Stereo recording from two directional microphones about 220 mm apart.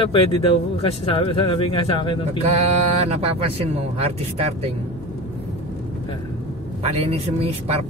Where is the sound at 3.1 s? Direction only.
25° right (ahead or behind).